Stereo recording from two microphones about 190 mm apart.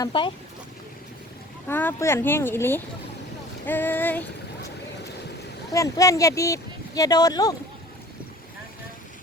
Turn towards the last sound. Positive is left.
turn(degrees=20)  # may be behind; listen again after turning